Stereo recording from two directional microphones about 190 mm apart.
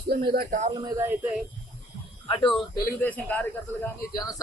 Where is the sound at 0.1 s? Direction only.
55° right (ahead or behind).